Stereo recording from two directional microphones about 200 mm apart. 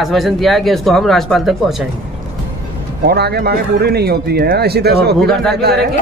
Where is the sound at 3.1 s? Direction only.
55° right (ahead or behind).